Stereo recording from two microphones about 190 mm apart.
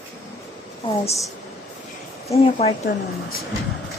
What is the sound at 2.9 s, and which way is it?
Speech, 55° left (ahead or behind).